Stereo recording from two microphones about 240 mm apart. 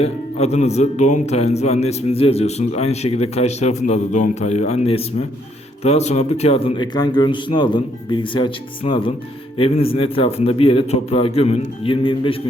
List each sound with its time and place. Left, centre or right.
0.0 s speech: left